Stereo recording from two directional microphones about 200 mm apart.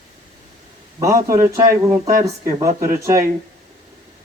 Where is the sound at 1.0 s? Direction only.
15° right (ahead or behind).